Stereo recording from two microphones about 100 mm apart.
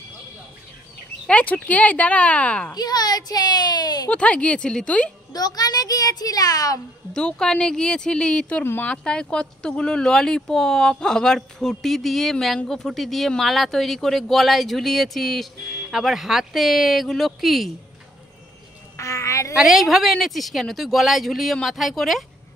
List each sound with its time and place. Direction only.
1.2 s speech: 15° left (ahead or behind)
2.7 s a child's voice: 40° left (ahead or behind)
4.1 s speech: 10° left (ahead or behind)
5.3 s a child's voice: 40° left (ahead or behind)
7.2 s speech: 5° left (ahead or behind)
8.9 s speech: 10° left (ahead or behind)
18.9 s frog: 30° left (ahead or behind)
19.5 s speech: centre (ahead or behind)